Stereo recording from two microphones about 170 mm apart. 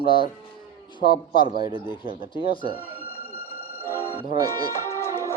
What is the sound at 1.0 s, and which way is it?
Speech, 65° left (ahead or behind).